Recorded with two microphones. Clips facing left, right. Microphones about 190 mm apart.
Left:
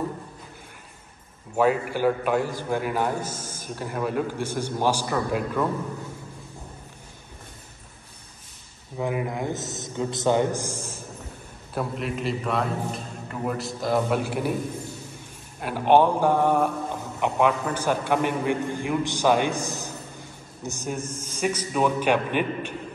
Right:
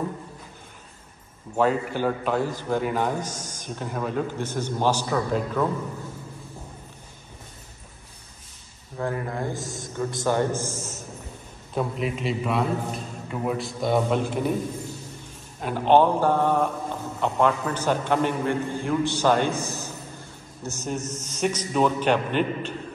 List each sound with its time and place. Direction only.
1.6 s a man's voice: 10° left (ahead or behind)
8.9 s a man's voice: 15° left (ahead or behind)
10.8 s a sound: 30° left (ahead or behind)
11.7 s a man's voice: centre (ahead or behind)
15.6 s a man's voice: 10° left (ahead or behind)